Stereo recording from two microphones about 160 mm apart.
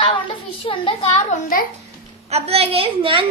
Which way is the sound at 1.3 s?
60° left (ahead or behind).